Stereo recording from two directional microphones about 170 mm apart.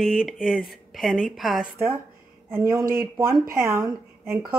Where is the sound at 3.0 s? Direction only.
15° right (ahead or behind).